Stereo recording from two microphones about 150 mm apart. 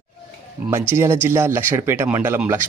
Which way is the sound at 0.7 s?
15° right (ahead or behind).